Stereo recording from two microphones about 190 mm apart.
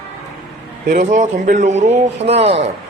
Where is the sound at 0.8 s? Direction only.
40° right (ahead or behind).